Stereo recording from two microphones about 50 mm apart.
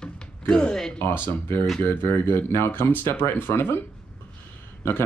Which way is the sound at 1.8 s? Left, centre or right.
Left.